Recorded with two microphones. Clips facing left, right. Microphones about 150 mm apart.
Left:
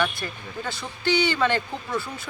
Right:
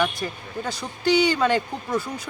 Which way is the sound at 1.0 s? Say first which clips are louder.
Right 3 dB; 40° right (ahead or behind).